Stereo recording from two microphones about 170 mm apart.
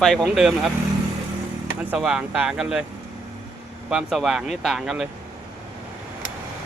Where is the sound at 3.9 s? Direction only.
Centre (ahead or behind).